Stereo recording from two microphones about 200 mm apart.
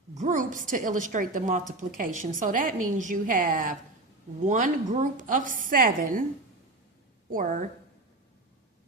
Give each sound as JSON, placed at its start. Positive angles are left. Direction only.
{"t": 0.1, "sound": "a woman's voice", "side_deg": -35}
{"t": 7.3, "sound": "speech", "side_deg": -40}